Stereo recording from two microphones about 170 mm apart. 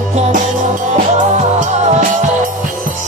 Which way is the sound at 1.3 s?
45° right (ahead or behind).